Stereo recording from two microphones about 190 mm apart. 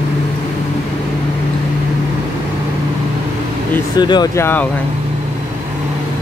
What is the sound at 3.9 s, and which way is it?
Speech, 20° left (ahead or behind).